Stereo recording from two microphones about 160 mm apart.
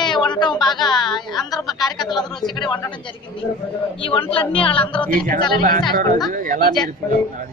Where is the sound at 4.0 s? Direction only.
35° left (ahead or behind).